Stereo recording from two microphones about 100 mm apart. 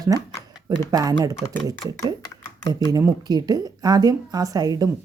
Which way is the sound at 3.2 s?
40° right (ahead or behind).